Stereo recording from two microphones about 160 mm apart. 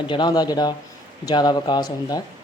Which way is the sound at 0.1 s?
30° left (ahead or behind).